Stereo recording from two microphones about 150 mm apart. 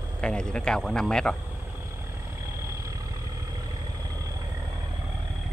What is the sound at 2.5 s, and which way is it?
Vehicle, 20° right (ahead or behind).